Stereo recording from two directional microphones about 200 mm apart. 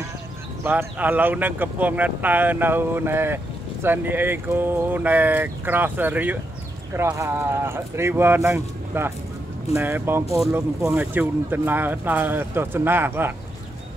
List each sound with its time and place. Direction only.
0.7 s speech: 10° right (ahead or behind)